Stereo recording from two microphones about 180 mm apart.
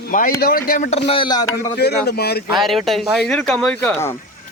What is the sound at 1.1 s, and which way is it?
Speech, 25° left (ahead or behind).